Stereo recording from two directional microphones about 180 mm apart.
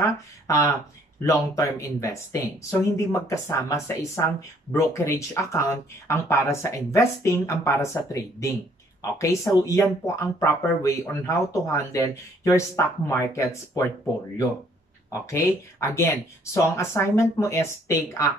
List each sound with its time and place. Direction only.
0.0 s speech: 15° left (ahead or behind)
15.0 s speech: 15° left (ahead or behind)